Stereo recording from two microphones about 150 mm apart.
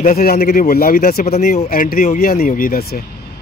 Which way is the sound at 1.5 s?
60° left (ahead or behind).